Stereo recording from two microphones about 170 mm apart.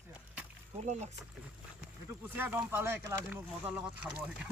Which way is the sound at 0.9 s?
40° right (ahead or behind).